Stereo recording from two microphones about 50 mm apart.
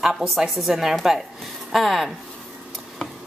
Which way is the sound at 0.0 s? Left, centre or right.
Centre.